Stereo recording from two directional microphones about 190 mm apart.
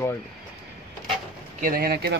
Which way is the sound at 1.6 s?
50° right (ahead or behind).